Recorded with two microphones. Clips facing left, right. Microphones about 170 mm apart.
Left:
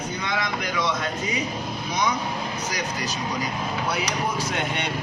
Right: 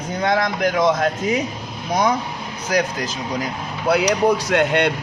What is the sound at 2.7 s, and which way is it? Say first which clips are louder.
Speech: right 8 dB; 75° right (ahead or behind).